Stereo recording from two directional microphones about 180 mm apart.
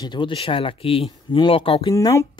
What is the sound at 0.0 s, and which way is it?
Speech, 25° left (ahead or behind).